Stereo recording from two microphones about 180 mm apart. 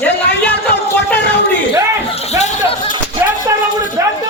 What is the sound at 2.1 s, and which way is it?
Speech, 35° left (ahead or behind).